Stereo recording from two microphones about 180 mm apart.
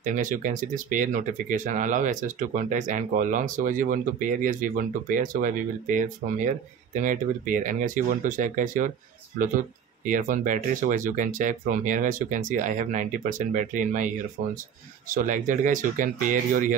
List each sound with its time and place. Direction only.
0.0 s speech: 45° right (ahead or behind)
10.0 s speech: 45° right (ahead or behind)